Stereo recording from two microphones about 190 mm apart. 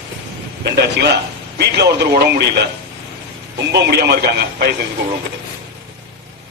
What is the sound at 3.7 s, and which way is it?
Speech, 60° right (ahead or behind).